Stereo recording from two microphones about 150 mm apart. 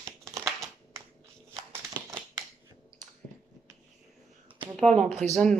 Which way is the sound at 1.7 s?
20° right (ahead or behind).